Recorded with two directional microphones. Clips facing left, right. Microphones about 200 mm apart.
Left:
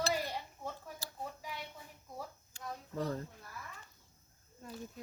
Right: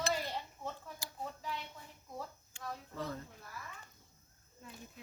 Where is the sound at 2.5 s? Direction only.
40° left (ahead or behind).